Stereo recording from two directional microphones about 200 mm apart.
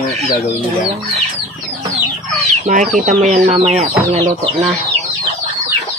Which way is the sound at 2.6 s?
40° right (ahead or behind).